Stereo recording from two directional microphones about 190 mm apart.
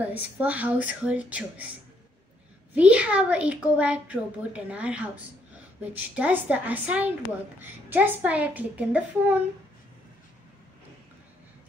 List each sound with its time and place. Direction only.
0.0 s a woman's voice: 10° right (ahead or behind)
2.7 s a woman's voice: 5° right (ahead or behind)